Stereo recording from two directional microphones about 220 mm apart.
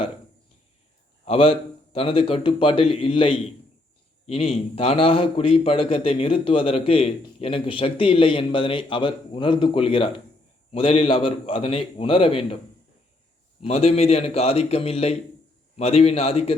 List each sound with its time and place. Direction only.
1.2 s a man's voice: 25° left (ahead or behind)
13.6 s a man's voice: 25° left (ahead or behind)